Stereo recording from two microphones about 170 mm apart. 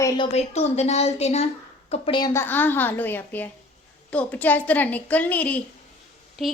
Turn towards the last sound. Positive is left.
turn(degrees=0)  # may be behind; listen again after turning